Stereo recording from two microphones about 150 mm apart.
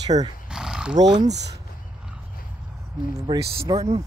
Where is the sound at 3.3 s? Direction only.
30° right (ahead or behind).